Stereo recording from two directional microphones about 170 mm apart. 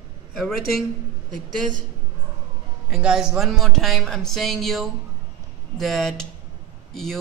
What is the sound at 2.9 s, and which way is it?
A man's voice, 5° right (ahead or behind).